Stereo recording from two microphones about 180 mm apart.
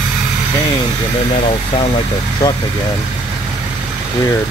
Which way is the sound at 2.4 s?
20° left (ahead or behind).